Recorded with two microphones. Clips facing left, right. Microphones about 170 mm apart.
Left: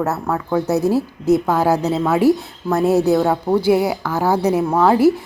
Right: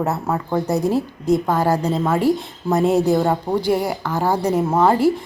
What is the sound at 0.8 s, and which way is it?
Speech, 15° right (ahead or behind).